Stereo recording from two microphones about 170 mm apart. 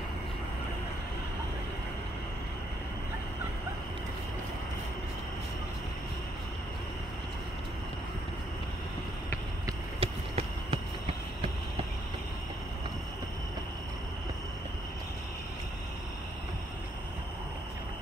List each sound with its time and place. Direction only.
9.9 s basketball bounce: 35° right (ahead or behind)